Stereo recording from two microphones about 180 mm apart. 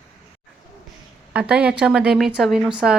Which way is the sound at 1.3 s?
5° right (ahead or behind).